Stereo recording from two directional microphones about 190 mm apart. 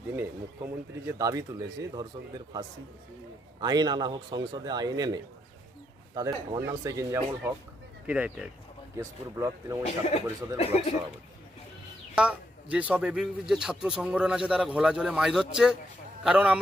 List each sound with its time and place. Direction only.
0.2 s speech: 10° right (ahead or behind)
3.6 s a man's voice: 20° right (ahead or behind)
9.8 s a man's voice: 35° left (ahead or behind)
12.1 s speech: 5° right (ahead or behind)